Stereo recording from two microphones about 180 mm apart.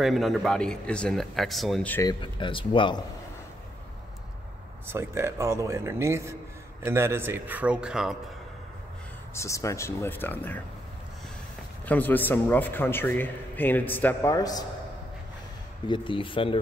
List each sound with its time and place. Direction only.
0.0 s speech: centre (ahead or behind)
2.0 s speech: 25° left (ahead or behind)
4.8 s speech: 15° right (ahead or behind)
9.3 s a man's voice: 15° left (ahead or behind)
11.8 s a man's voice: 10° left (ahead or behind)
15.9 s speech: 30° left (ahead or behind)